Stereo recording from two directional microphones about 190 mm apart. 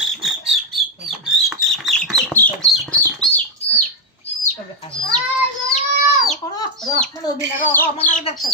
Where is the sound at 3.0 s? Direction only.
5° left (ahead or behind).